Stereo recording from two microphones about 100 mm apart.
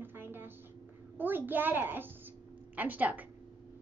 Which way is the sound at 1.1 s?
20° right (ahead or behind).